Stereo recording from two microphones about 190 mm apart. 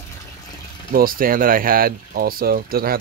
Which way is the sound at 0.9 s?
50° right (ahead or behind).